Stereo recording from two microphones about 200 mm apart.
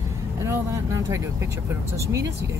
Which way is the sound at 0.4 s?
15° right (ahead or behind).